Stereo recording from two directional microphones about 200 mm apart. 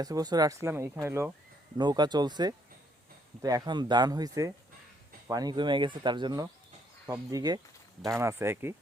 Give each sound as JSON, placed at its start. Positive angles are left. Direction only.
{"t": 0.0, "sound": "speech", "side_deg": -20}